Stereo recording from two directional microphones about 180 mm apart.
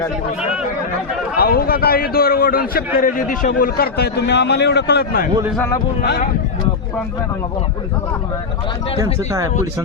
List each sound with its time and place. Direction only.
1.4 s a man's voice: 55° left (ahead or behind)
5.5 s speech: 15° left (ahead or behind)
6.0 s a man's voice: 60° left (ahead or behind)